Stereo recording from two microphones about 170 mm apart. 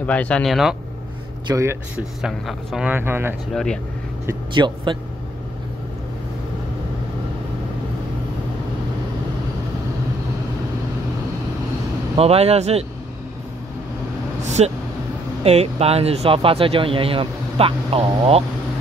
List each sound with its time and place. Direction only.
0.0 s speech: 10° left (ahead or behind)
1.5 s speech: 15° right (ahead or behind)
2.2 s speech: 5° right (ahead or behind)
3.5 s speech: 5° left (ahead or behind)
4.6 s speech: 30° right (ahead or behind)
12.2 s speech: 35° right (ahead or behind)
14.6 s speech: 35° right (ahead or behind)